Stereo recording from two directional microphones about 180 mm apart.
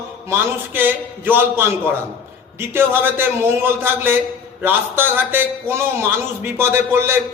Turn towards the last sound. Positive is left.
turn(degrees=-15)  # may be behind; listen again after turning